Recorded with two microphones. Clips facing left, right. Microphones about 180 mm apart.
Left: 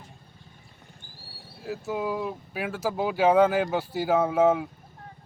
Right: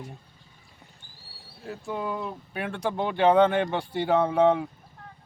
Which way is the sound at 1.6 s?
5° left (ahead or behind).